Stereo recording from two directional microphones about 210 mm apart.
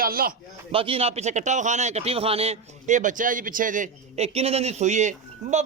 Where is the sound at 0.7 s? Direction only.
25° right (ahead or behind).